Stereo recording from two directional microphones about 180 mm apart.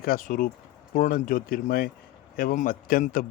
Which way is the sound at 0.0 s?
50° left (ahead or behind).